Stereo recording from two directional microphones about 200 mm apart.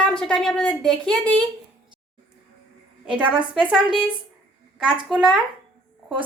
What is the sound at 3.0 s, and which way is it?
Speech, 5° right (ahead or behind).